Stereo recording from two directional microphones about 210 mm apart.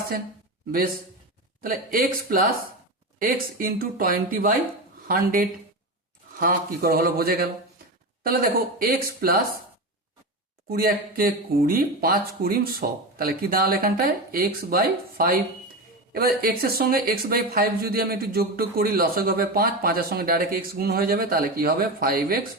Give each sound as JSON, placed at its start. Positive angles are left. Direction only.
{"t": 1.6, "sound": "speech", "side_deg": -45}
{"t": 10.7, "sound": "speech", "side_deg": -45}